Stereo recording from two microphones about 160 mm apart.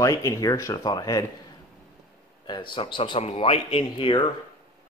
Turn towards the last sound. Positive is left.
turn(degrees=30)  # may be behind; listen again after turning